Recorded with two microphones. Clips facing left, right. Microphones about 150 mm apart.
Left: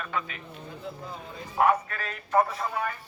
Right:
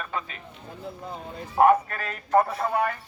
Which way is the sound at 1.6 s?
45° right (ahead or behind).